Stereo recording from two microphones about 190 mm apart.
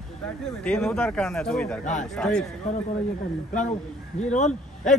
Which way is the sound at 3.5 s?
40° left (ahead or behind).